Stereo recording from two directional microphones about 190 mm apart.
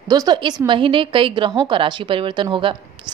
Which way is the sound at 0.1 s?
20° right (ahead or behind).